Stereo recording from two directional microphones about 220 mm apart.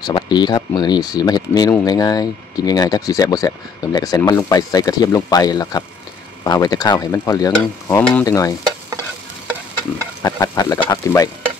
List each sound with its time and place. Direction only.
0.0 s speech: 20° left (ahead or behind)
10.2 s speech: 15° left (ahead or behind)